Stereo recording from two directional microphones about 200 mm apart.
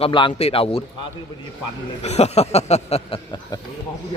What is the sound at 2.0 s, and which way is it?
Speech, 30° left (ahead or behind).